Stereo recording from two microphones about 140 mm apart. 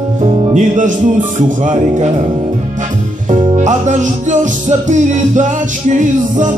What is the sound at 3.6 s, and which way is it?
Music, 60° right (ahead or behind).